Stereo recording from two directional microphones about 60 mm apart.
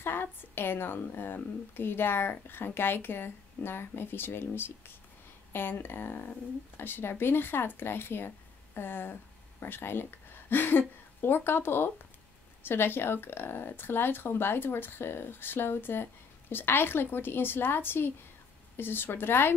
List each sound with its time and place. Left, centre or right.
0.0 s speech: left